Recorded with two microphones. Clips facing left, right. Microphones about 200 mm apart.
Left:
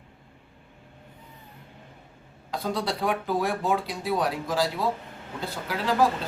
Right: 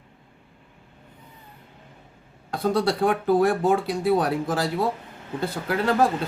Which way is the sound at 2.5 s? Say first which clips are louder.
Right 6 dB; 55° right (ahead or behind).